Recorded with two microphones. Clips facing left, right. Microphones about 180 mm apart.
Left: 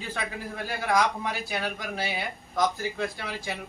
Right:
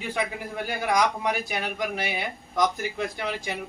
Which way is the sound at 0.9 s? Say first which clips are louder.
Right 1 dB; 15° right (ahead or behind).